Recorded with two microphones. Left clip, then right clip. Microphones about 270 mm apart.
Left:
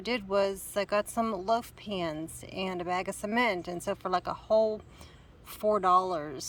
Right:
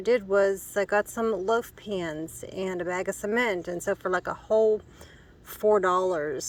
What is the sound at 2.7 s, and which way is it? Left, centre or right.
Speech, left.